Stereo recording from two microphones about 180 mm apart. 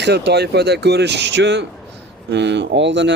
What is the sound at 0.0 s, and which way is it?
Speech, 70° right (ahead or behind).